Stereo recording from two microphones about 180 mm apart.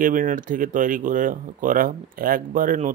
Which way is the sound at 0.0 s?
50° right (ahead or behind).